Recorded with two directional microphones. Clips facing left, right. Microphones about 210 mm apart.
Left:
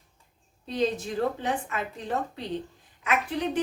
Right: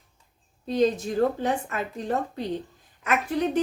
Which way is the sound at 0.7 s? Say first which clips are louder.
Right 4 dB; 45° right (ahead or behind).